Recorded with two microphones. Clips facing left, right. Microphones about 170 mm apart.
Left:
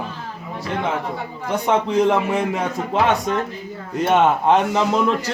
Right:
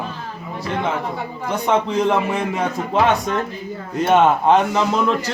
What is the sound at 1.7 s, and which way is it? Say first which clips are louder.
Speech: left 1 dB; 15° left (ahead or behind).